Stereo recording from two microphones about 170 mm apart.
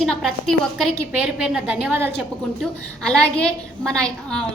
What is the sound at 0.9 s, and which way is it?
A woman's voice, 10° right (ahead or behind).